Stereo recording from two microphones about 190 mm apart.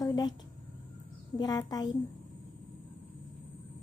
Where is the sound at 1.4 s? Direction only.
20° left (ahead or behind).